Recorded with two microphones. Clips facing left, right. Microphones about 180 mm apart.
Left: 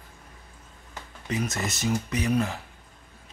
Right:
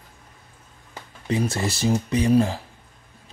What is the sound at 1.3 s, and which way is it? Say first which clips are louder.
Speech: right 5 dB; 30° right (ahead or behind).